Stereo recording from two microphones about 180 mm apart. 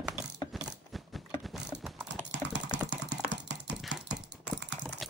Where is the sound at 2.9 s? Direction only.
70° right (ahead or behind).